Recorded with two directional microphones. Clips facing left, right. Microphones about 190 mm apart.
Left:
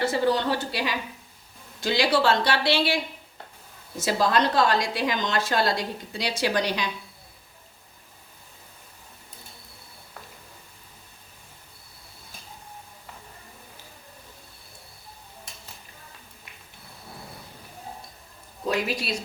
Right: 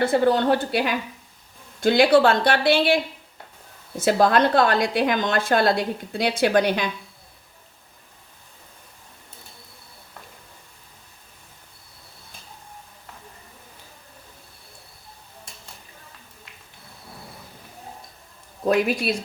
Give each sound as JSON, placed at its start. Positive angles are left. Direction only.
{"t": 0.0, "sound": "speech", "side_deg": -55}
{"t": 4.0, "sound": "a woman's voice", "side_deg": -55}
{"t": 18.7, "sound": "speech", "side_deg": -55}